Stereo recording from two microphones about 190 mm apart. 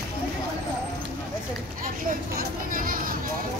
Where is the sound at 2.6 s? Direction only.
45° right (ahead or behind).